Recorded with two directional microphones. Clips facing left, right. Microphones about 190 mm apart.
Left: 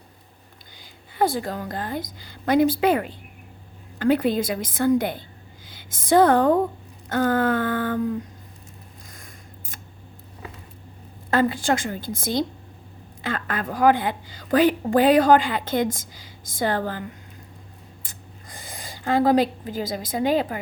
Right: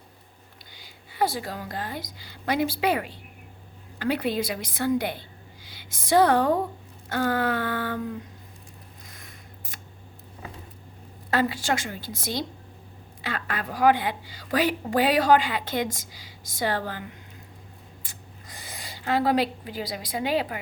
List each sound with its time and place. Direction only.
0.8 s a woman's voice: 50° left (ahead or behind)
9.1 s scissors: 50° left (ahead or behind)
11.3 s a woman's voice: 50° left (ahead or behind)
18.0 s a sound: 50° left (ahead or behind)